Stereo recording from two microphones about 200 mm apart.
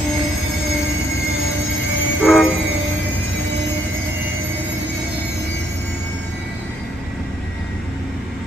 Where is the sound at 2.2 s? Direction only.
Centre (ahead or behind).